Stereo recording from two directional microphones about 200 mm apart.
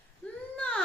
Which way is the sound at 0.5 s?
5° left (ahead or behind).